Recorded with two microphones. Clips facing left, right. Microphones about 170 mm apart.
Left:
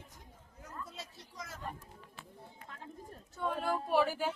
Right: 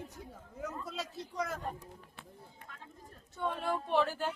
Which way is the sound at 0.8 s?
90° right.